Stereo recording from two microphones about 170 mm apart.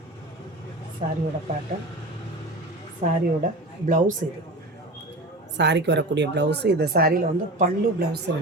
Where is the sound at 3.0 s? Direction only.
50° right (ahead or behind).